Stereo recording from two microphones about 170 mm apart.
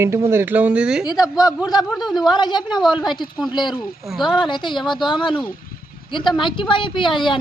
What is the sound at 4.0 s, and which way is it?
Speech, centre (ahead or behind).